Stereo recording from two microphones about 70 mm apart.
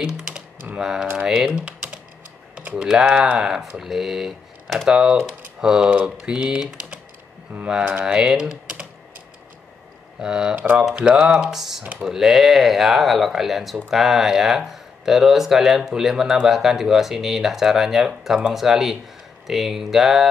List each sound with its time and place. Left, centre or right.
0.0 s typing: centre
1.1 s speech: centre
2.8 s speech: centre
10.2 s speech: centre
10.5 s speech: right
10.9 s speech: centre
11.8 s speech: centre
12.1 s speech: centre